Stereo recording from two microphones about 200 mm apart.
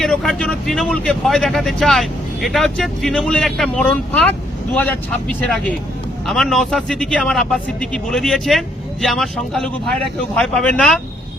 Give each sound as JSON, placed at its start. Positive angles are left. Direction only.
{"t": 0.0, "sound": "a man's voice", "side_deg": 0}